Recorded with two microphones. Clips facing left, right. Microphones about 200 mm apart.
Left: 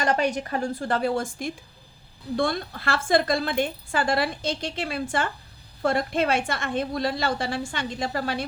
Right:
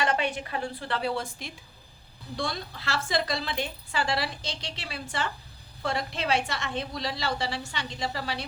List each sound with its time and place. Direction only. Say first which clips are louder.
0.0 s a woman's voice: left 4 dB; 40° left (ahead or behind)